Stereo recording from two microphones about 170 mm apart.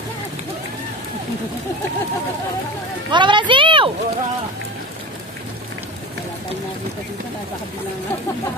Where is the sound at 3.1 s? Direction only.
30° right (ahead or behind).